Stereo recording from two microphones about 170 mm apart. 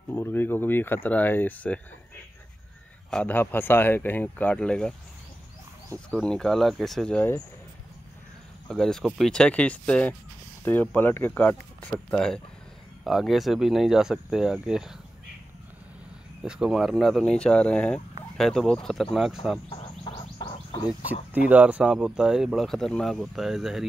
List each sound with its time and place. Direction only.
0.1 s speech: 10° left (ahead or behind)
3.1 s speech: 10° left (ahead or behind)
6.0 s speech: 5° left (ahead or behind)
8.6 s speech: 5° left (ahead or behind)
16.4 s speech: 5° right (ahead or behind)
19.7 s a sound: 25° left (ahead or behind)
21.1 s speech: 10° right (ahead or behind)